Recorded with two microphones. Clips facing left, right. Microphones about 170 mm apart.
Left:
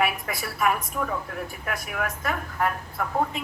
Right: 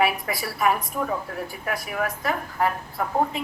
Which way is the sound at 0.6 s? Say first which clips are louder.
Right 2 dB; 25° right (ahead or behind).